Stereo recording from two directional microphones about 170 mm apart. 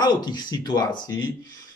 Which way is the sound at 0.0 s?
25° left (ahead or behind).